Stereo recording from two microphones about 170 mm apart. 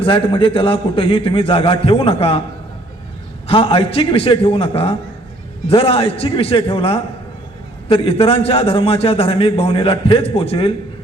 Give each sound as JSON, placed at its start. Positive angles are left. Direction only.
{"t": 0.0, "sound": "a man's voice", "side_deg": 30}
{"t": 3.4, "sound": "a man's voice", "side_deg": 35}